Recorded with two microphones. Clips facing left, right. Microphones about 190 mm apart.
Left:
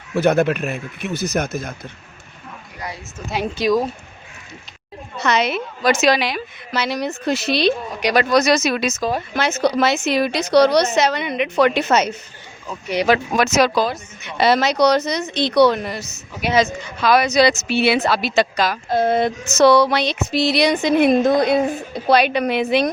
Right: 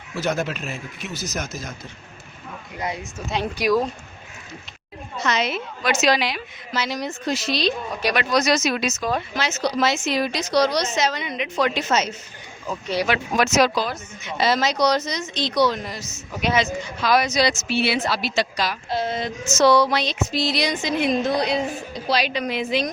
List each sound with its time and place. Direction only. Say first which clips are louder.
0.1 s a woman's voice: left 9 dB; 60° left (ahead or behind)
2.7 s speech: right 4 dB; 20° right (ahead or behind)
3.4 s speech: left 3 dB; 20° left (ahead or behind)
5.1 s a woman's voice: left 4 dB; 65° left (ahead or behind)
5.8 s a woman's voice: left 4 dB; 55° left (ahead or behind)
13.3 s a woman's voice: left 2 dB; 60° left (ahead or behind)